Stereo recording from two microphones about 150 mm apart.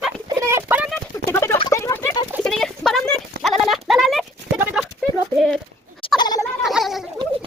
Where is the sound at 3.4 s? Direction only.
Centre (ahead or behind).